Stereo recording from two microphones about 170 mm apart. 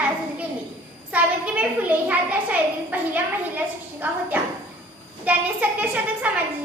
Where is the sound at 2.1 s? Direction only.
10° right (ahead or behind).